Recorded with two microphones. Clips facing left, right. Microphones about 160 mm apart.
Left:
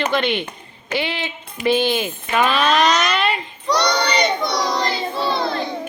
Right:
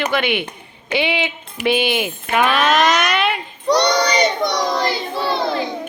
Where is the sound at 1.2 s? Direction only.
75° right (ahead or behind).